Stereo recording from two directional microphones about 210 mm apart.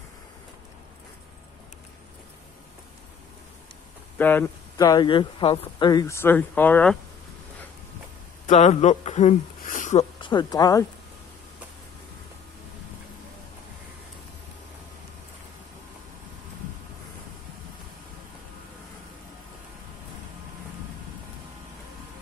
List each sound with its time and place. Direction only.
4.2 s speech: 10° left (ahead or behind)
8.5 s speech: 35° left (ahead or behind)
10.2 s speech: 20° left (ahead or behind)